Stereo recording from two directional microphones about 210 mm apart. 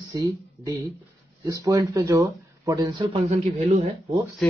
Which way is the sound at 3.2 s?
30° right (ahead or behind).